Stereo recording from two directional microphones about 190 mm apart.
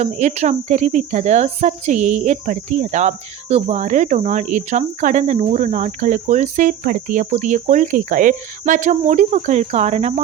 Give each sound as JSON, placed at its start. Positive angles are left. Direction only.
{"t": 0.0, "sound": "speech", "side_deg": -40}